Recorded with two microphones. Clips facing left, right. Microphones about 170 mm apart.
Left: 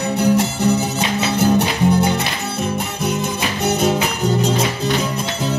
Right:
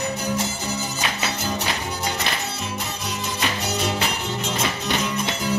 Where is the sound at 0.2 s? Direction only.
65° left (ahead or behind).